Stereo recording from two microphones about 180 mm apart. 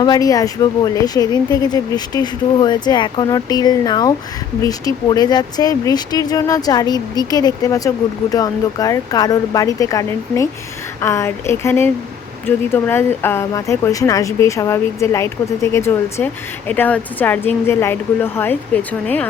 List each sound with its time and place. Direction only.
0.0 s speech: 20° left (ahead or behind)